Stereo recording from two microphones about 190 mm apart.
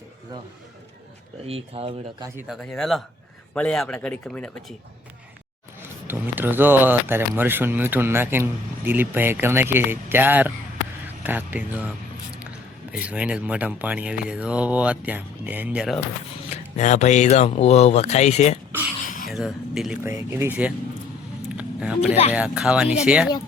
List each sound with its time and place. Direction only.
1.5 s speech: 30° right (ahead or behind)
2.5 s speech: 5° left (ahead or behind)
5.8 s speech: 10° right (ahead or behind)
16.5 s speech: 40° left (ahead or behind)
19.0 s throat clearing: 45° left (ahead or behind)
19.3 s speech: centre (ahead or behind)
20.1 s speech: 15° right (ahead or behind)
21.5 s a sound: 5° right (ahead or behind)
22.3 s speech: 5° right (ahead or behind)